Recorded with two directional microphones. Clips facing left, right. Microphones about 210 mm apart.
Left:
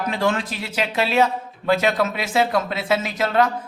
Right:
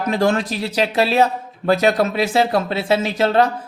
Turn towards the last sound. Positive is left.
turn(degrees=-30)  # may be behind; listen again after turning